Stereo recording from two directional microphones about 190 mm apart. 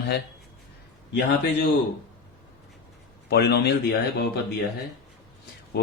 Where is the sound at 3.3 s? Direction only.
60° left (ahead or behind).